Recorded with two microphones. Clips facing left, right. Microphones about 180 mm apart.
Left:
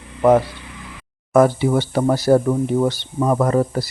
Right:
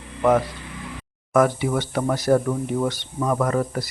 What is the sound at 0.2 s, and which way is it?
Speech, 30° left (ahead or behind).